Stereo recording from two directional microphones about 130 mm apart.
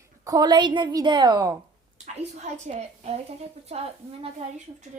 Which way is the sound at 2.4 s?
60° right (ahead or behind).